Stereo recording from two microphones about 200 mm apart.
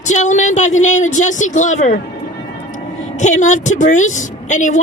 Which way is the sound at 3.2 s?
35° left (ahead or behind).